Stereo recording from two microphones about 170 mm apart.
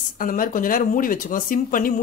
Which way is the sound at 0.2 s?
55° left (ahead or behind).